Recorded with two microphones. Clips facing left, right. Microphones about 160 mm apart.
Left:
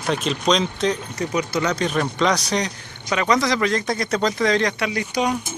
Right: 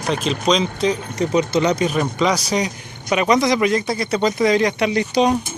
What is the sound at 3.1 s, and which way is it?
Speech, 15° right (ahead or behind).